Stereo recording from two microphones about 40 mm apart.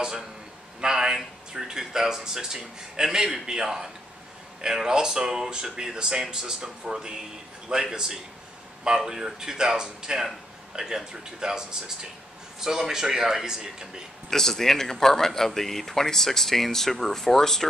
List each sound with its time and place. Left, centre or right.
0.7 s a man's voice: centre
14.3 s speech: centre